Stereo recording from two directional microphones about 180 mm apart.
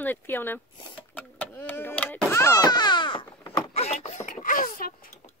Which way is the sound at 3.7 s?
35° left (ahead or behind).